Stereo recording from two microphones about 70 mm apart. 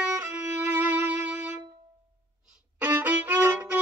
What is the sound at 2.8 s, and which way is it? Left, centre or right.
Violin, right.